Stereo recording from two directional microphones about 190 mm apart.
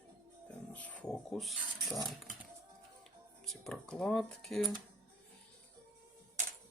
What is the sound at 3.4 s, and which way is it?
Speech, centre (ahead or behind).